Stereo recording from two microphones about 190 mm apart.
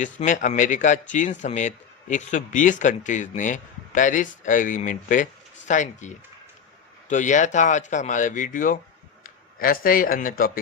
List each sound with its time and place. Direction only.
0.0 s speech: 40° left (ahead or behind)